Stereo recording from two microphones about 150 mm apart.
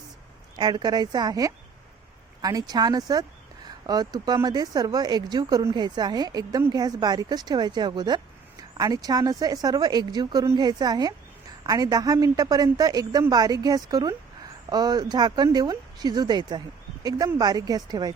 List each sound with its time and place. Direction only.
0.5 s a woman's voice: 30° right (ahead or behind)